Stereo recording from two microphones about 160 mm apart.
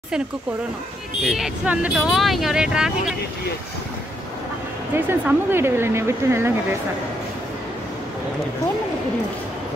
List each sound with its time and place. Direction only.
1.3 s speech: 5° right (ahead or behind)
4.9 s speech: 15° right (ahead or behind)